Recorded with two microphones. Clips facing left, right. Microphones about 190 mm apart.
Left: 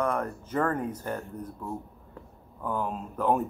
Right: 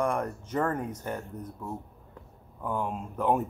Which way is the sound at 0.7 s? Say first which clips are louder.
Left 2 dB; 25° right (ahead or behind).